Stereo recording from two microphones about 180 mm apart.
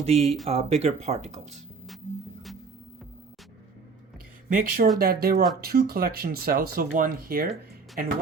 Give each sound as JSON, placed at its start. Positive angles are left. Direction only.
{"t": 0.0, "sound": "speech", "side_deg": -35}
{"t": 4.4, "sound": "speech", "side_deg": -50}